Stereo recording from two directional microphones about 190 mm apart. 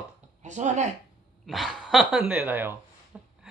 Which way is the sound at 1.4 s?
Centre (ahead or behind).